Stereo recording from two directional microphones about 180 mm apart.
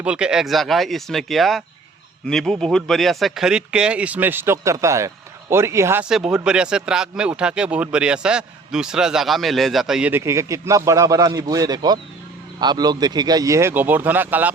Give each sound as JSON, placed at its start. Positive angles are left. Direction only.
{"t": 0.0, "sound": "speech", "side_deg": -5}
{"t": 6.1, "sound": "speech", "side_deg": -5}